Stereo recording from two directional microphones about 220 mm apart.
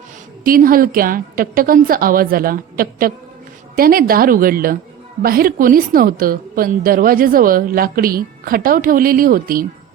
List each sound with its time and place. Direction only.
0.4 s a woman's voice: 40° right (ahead or behind)